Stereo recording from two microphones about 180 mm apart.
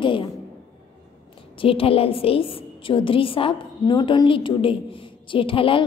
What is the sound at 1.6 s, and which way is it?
A woman's voice, 30° left (ahead or behind).